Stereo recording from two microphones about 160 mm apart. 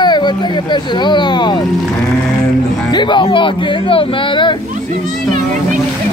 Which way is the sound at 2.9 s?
30° left (ahead or behind).